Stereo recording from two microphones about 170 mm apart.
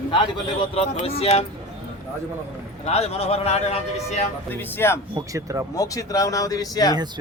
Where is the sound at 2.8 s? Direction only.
35° left (ahead or behind).